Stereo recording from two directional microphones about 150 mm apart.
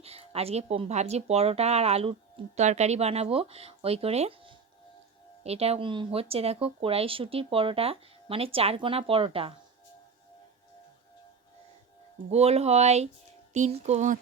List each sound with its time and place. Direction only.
0.0 s a woman's voice: 40° right (ahead or behind)
12.3 s a woman's voice: 45° right (ahead or behind)